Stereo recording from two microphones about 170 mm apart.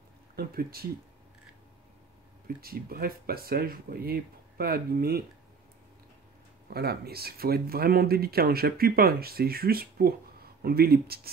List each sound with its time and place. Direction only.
0.4 s speech: 60° right (ahead or behind)
2.4 s speech: 60° right (ahead or behind)
6.7 s speech: 65° right (ahead or behind)